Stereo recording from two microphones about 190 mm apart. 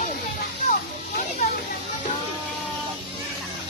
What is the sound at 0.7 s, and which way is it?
Children playing, 45° left (ahead or behind).